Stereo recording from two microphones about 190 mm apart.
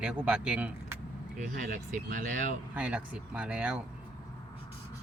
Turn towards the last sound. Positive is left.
turn(degrees=-5)  # may be behind; listen again after turning